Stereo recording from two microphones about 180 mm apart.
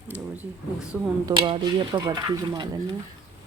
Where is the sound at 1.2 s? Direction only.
30° right (ahead or behind).